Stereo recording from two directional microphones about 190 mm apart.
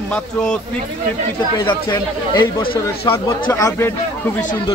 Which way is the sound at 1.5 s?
20° left (ahead or behind).